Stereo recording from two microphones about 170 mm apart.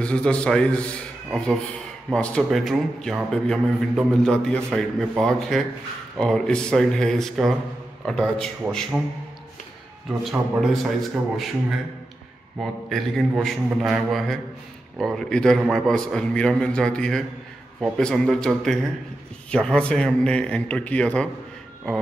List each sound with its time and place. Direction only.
0.0 s a man's voice: 5° left (ahead or behind)
12.5 s a man's voice: centre (ahead or behind)